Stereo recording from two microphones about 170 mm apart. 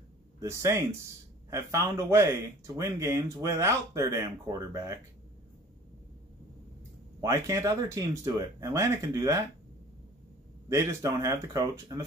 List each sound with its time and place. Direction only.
0.4 s speech: 15° right (ahead or behind)
7.2 s speech: 20° right (ahead or behind)
10.7 s speech: 15° right (ahead or behind)